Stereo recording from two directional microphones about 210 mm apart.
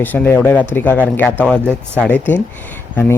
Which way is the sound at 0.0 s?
10° left (ahead or behind).